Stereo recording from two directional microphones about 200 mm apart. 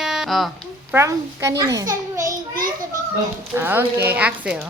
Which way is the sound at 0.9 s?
15° right (ahead or behind).